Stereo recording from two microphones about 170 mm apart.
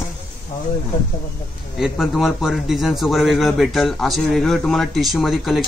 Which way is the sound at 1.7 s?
Centre (ahead or behind).